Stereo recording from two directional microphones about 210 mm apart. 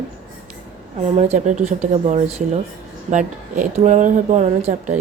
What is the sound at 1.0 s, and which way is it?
A woman's voice, 30° right (ahead or behind).